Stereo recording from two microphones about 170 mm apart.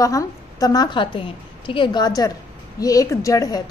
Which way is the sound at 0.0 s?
20° left (ahead or behind).